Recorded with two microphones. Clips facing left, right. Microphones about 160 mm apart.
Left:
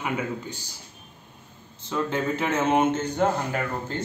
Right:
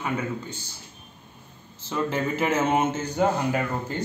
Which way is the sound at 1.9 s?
5° right (ahead or behind).